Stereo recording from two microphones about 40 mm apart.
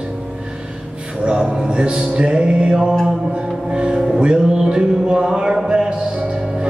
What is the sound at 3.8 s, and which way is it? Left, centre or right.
Music, right.